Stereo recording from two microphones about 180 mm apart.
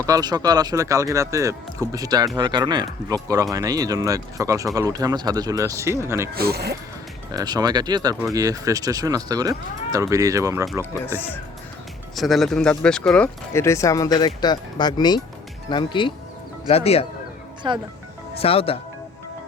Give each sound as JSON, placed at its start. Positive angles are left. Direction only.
{"t": 0.0, "sound": "speech", "side_deg": -20}
{"t": 6.3, "sound": "speech", "side_deg": -60}
{"t": 7.3, "sound": "speech", "side_deg": -20}
{"t": 10.9, "sound": "speech", "side_deg": 10}
{"t": 12.1, "sound": "speech", "side_deg": 0}
{"t": 17.6, "sound": "speech", "side_deg": -25}
{"t": 18.3, "sound": "speech", "side_deg": 30}